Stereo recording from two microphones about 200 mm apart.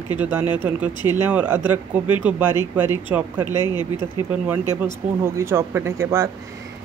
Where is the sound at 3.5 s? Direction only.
20° left (ahead or behind).